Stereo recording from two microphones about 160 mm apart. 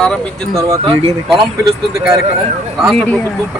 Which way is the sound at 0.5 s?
20° right (ahead or behind).